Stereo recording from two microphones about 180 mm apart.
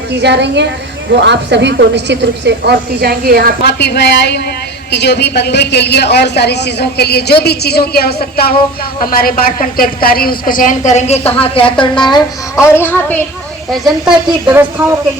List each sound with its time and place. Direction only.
0.2 s a woman's voice: 70° right (ahead or behind)
3.6 s a woman's voice: 65° left (ahead or behind); by 12.0 s 30° left (ahead or behind)
12.1 s speech: 15° left (ahead or behind)
13.7 s a woman's voice: centre (ahead or behind)